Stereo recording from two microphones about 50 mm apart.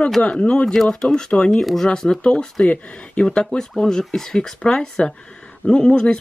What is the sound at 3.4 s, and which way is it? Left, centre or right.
Speech, centre.